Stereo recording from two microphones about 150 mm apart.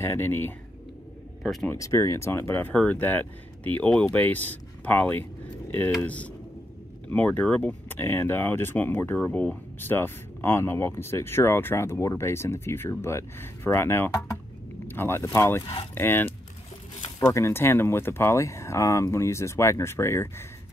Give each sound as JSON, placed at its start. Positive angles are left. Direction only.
{"t": 0.0, "sound": "speech", "side_deg": 15}
{"t": 1.4, "sound": "speech", "side_deg": 0}
{"t": 1.7, "sound": "speech", "side_deg": 20}
{"t": 15.6, "sound": "speech", "side_deg": 35}
{"t": 15.9, "sound": "speech", "side_deg": 15}